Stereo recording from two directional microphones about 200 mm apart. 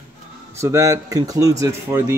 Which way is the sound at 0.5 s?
15° right (ahead or behind).